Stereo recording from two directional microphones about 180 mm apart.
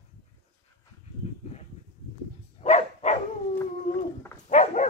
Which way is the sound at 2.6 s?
40° left (ahead or behind).